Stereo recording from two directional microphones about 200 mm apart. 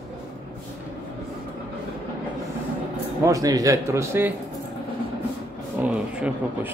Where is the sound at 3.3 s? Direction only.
15° right (ahead or behind).